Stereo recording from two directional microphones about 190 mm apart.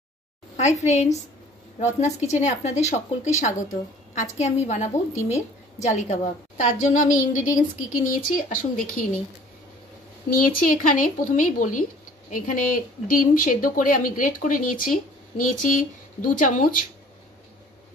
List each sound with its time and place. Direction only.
0.6 s a woman's voice: 35° left (ahead or behind)
10.3 s speech: 45° left (ahead or behind)